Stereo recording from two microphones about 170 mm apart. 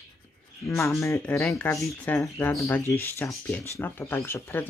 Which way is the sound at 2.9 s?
15° left (ahead or behind).